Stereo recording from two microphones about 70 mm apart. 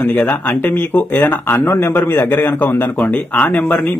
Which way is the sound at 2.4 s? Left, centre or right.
Left.